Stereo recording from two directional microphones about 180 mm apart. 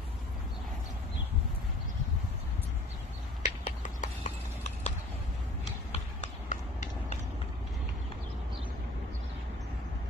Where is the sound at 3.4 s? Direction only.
45° left (ahead or behind).